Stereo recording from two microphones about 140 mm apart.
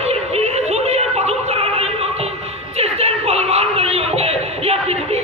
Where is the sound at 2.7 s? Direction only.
50° right (ahead or behind).